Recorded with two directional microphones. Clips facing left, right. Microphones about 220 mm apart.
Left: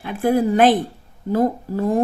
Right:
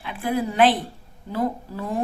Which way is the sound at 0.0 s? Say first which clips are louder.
Left 7 dB; 45° left (ahead or behind).